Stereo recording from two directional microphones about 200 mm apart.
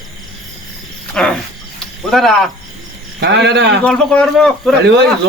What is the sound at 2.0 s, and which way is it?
Speech, centre (ahead or behind).